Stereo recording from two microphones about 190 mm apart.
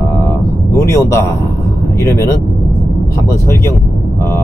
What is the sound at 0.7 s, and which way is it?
A man's voice, 15° left (ahead or behind).